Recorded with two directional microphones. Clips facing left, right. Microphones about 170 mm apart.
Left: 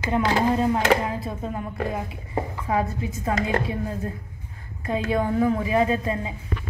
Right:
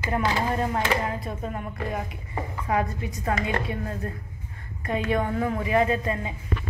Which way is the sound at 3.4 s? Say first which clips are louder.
Left 3 dB; 30° left (ahead or behind).